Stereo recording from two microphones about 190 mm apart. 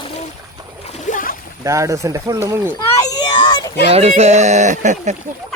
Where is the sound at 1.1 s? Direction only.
45° left (ahead or behind).